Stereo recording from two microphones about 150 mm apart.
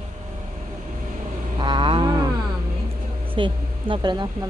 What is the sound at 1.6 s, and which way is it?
Vehicle, 30° right (ahead or behind).